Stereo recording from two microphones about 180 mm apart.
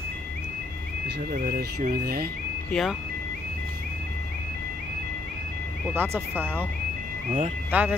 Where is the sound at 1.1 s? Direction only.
55° right (ahead or behind).